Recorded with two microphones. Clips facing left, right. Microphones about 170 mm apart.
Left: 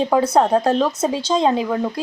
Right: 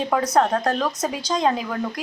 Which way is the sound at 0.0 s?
30° left (ahead or behind).